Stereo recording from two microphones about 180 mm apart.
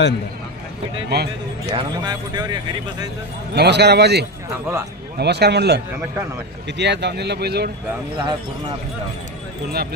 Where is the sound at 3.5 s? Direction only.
65° right (ahead or behind).